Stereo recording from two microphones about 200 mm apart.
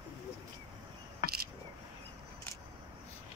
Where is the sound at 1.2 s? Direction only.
45° left (ahead or behind).